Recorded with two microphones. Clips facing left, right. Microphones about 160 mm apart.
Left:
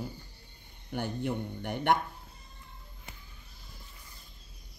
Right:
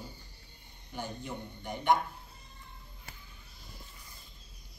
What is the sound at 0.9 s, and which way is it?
Speech, 65° left (ahead or behind).